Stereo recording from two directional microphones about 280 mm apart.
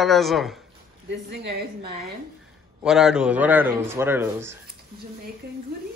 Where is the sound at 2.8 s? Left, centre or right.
Centre.